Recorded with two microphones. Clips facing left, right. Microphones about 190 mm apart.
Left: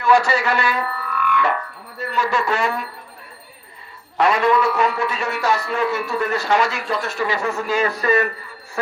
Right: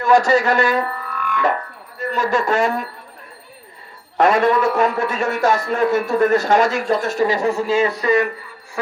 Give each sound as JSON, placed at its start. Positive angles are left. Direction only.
{"t": 0.0, "sound": "a man's voice", "side_deg": -45}
{"t": 0.9, "sound": "music", "side_deg": -40}
{"t": 2.0, "sound": "a man's voice", "side_deg": -45}
{"t": 4.2, "sound": "a man's voice", "side_deg": -45}